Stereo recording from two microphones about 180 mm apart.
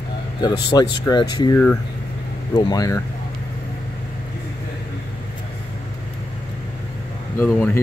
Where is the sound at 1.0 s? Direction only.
25° left (ahead or behind).